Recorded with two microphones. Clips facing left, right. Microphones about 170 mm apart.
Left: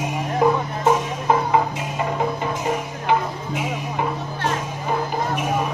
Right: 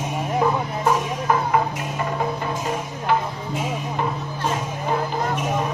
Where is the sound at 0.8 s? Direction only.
20° left (ahead or behind).